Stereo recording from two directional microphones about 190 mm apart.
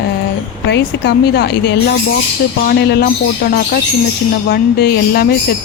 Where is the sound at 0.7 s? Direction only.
60° left (ahead or behind).